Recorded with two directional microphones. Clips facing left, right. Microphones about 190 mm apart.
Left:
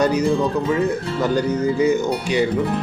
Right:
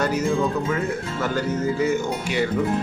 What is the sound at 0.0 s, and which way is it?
Speech, 15° left (ahead or behind).